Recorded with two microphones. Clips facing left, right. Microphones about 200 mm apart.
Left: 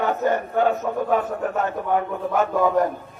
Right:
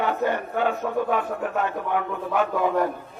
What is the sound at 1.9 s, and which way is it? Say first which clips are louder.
Speech: left 5 dB; 40° left (ahead or behind).